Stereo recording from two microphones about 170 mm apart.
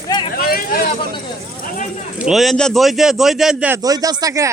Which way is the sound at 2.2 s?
Centre (ahead or behind).